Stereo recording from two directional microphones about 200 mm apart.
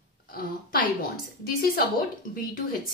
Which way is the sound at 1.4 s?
50° left (ahead or behind).